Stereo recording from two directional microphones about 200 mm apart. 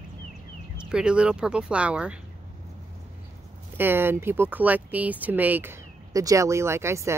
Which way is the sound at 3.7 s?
10° right (ahead or behind).